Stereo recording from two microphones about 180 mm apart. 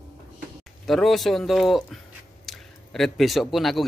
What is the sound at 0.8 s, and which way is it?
A man's voice, centre (ahead or behind).